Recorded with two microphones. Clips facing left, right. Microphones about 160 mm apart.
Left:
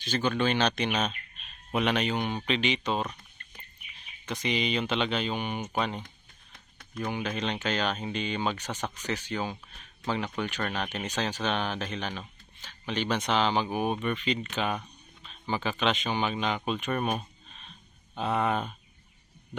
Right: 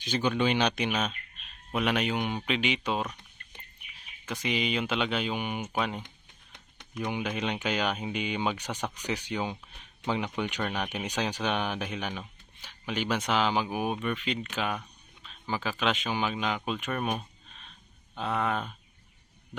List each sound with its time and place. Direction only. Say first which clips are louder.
0.0 s speech: even; 15° right (ahead or behind)
6.5 s a sound: right 1 dB; 20° right (ahead or behind)
7.1 s speech: even; 10° right (ahead or behind)